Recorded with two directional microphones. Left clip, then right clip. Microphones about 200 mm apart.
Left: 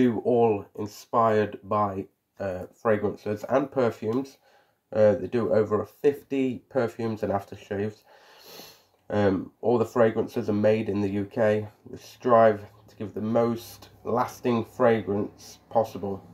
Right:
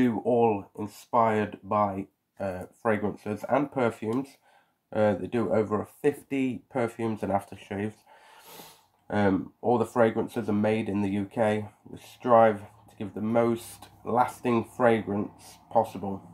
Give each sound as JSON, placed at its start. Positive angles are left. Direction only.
{"t": 0.0, "sound": "speech", "side_deg": 0}
{"t": 9.0, "sound": "speech", "side_deg": 0}